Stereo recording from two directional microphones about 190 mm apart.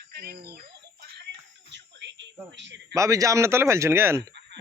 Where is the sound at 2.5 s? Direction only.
65° right (ahead or behind).